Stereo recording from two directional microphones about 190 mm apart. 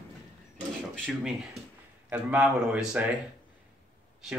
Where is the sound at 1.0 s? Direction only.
Centre (ahead or behind).